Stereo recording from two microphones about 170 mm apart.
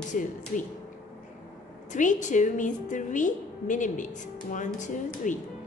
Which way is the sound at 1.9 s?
45° left (ahead or behind).